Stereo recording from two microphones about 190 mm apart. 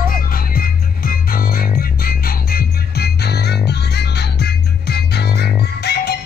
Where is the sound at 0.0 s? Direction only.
50° left (ahead or behind).